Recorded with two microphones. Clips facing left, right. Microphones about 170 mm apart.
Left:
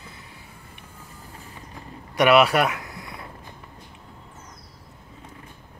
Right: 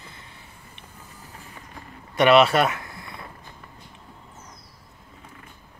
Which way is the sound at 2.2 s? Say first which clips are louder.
Right 1 dB; 10° left (ahead or behind).